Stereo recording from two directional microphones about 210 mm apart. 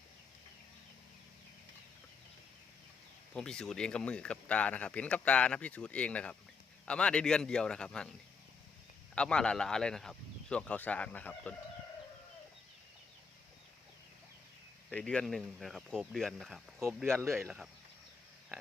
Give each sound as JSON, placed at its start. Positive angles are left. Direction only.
{"t": 3.3, "sound": "speech", "side_deg": 5}
{"t": 9.1, "sound": "speech", "side_deg": 5}
{"t": 14.8, "sound": "speech", "side_deg": 5}